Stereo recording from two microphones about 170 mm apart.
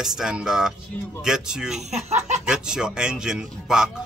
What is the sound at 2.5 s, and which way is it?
A man's voice, 5° right (ahead or behind).